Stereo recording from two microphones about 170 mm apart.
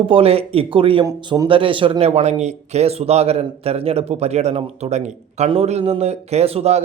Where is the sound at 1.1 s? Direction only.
20° right (ahead or behind).